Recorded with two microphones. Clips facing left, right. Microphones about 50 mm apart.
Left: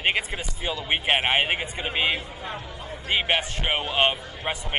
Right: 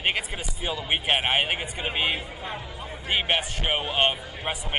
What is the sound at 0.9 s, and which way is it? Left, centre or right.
Speech, centre.